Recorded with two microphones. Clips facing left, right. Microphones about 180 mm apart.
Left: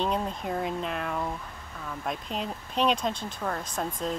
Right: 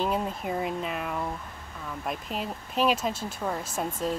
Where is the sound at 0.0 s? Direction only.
5° right (ahead or behind).